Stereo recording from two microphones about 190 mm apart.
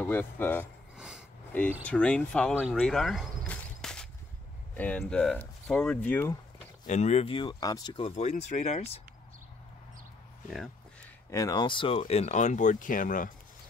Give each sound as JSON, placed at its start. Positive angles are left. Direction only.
{"t": 0.0, "sound": "speech", "side_deg": 10}
{"t": 0.9, "sound": "a sound", "side_deg": -5}
{"t": 1.5, "sound": "speech", "side_deg": 10}
{"t": 2.5, "sound": "a sound", "side_deg": 0}
{"t": 4.7, "sound": "speech", "side_deg": 5}
{"t": 6.9, "sound": "speech", "side_deg": 35}
{"t": 11.2, "sound": "speech", "side_deg": 15}